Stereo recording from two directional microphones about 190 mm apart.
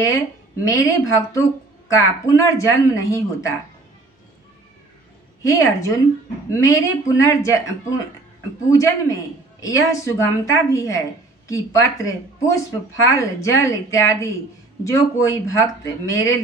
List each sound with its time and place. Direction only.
0.7 s speech: 15° left (ahead or behind)
5.4 s speech: 15° left (ahead or behind)
8.6 s speech: 15° left (ahead or behind)